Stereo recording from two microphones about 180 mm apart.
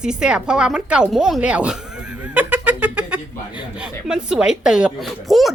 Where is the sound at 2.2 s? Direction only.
10° right (ahead or behind).